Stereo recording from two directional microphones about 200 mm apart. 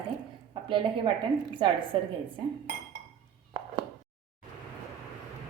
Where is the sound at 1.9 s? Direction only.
25° right (ahead or behind).